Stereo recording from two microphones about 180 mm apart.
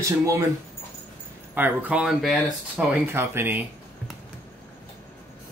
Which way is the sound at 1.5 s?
10° right (ahead or behind).